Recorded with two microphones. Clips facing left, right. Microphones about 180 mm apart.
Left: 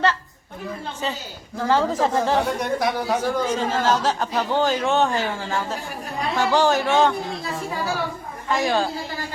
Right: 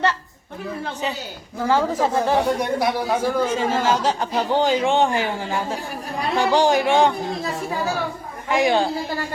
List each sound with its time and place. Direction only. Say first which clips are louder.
1.6 s speech: even; 10° right (ahead or behind)
8.4 s speech: right 3 dB; 15° right (ahead or behind)